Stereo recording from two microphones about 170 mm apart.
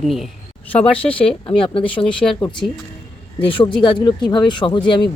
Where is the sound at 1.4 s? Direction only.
30° left (ahead or behind).